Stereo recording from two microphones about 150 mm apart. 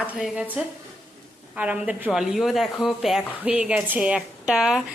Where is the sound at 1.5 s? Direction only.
10° right (ahead or behind).